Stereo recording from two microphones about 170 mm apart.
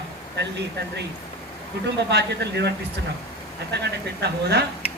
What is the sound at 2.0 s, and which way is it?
Speech, 85° right.